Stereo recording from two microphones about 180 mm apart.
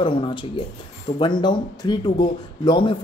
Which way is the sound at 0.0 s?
25° left (ahead or behind).